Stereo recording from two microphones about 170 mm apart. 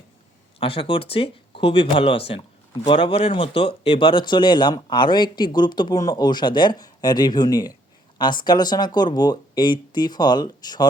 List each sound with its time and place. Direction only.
0.6 s speech: 30° left (ahead or behind)